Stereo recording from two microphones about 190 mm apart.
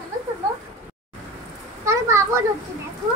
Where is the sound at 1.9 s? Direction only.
15° right (ahead or behind).